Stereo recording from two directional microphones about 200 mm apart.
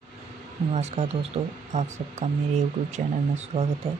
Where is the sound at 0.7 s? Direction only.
35° right (ahead or behind).